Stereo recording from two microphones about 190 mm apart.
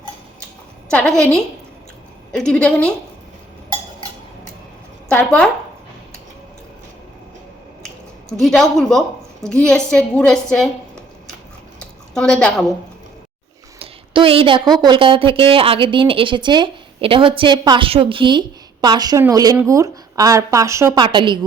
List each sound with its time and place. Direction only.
0.9 s a woman's voice: 5° left (ahead or behind)
5.0 s speech: 5° left (ahead or behind)
8.3 s a woman's voice: centre (ahead or behind)
12.1 s a woman's voice: 5° left (ahead or behind)
13.7 s a sound: 30° right (ahead or behind)
14.8 s a woman's voice: 25° right (ahead or behind)